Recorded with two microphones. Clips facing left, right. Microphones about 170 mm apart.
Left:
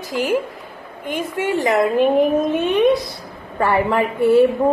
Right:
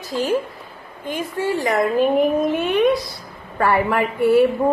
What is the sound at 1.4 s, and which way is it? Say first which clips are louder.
Speech: left 2 dB; 20° left (ahead or behind).